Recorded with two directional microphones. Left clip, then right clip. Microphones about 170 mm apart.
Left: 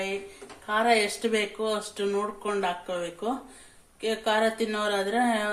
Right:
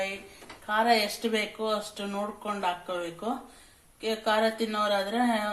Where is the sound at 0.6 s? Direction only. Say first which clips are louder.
Left 1 dB; 35° left (ahead or behind).